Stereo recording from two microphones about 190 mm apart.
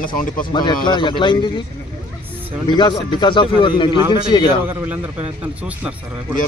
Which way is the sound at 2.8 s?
25° left (ahead or behind).